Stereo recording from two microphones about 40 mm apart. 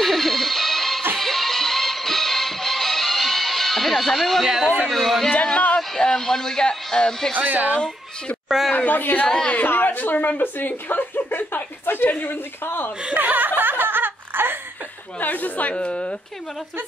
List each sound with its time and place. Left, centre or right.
0.0 s music: centre
4.5 s a man's voice: centre
4.8 s a man's voice: centre
5.4 s a sound: left
5.9 s a man's voice: centre
7.3 s speech: right
8.7 s speech: left
10.4 s a woman's voice: left
13.1 s speech: right
13.6 s snicker: right
15.1 s speech: left
15.7 s a woman's voice: left